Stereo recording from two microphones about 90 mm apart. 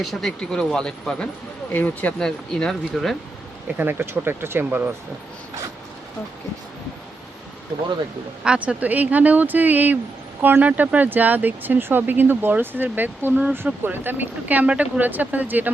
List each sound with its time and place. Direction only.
0.0 s speech: centre (ahead or behind); by 2.1 s 20° left (ahead or behind)
2.1 s speech: 5° left (ahead or behind)
3.8 s speech: 20° right (ahead or behind)
8.4 s speech: 15° right (ahead or behind)